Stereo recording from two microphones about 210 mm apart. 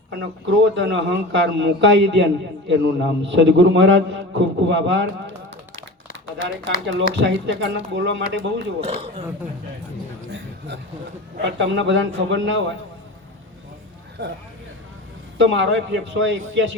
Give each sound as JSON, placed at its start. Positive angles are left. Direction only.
{"t": 0.2, "sound": "a man's voice", "side_deg": -60}
{"t": 7.2, "sound": "a man's voice", "side_deg": -60}
{"t": 8.8, "sound": "speech", "side_deg": -30}
{"t": 11.5, "sound": "a man's voice", "side_deg": -60}
{"t": 15.4, "sound": "a man's voice", "side_deg": -60}